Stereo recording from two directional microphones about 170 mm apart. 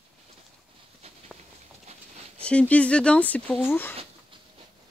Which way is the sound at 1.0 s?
35° right (ahead or behind).